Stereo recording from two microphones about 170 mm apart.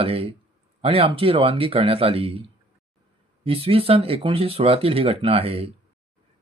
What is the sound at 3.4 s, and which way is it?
Speech, 35° right (ahead or behind).